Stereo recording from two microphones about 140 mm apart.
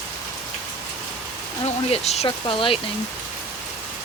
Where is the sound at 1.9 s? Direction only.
50° left (ahead or behind).